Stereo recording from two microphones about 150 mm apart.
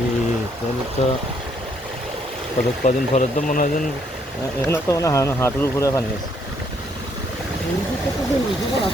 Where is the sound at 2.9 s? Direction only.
50° left (ahead or behind).